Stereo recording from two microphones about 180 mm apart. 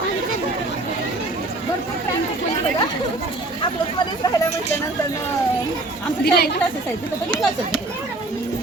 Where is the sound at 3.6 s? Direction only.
20° left (ahead or behind).